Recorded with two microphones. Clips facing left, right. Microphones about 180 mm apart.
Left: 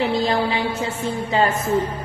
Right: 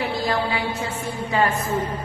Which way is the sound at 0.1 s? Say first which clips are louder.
Left 3 dB; 20° left (ahead or behind).